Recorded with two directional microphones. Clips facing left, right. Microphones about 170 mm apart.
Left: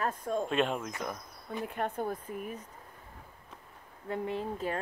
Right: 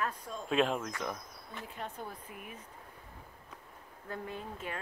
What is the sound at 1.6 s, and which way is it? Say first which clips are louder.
Speech: left 9 dB; 55° left (ahead or behind).